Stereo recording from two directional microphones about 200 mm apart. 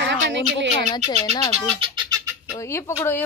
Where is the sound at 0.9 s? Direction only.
20° left (ahead or behind).